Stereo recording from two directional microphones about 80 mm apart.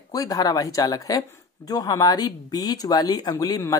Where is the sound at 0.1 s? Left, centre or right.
Left.